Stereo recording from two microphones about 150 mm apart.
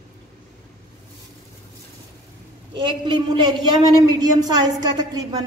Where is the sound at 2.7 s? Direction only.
30° right (ahead or behind).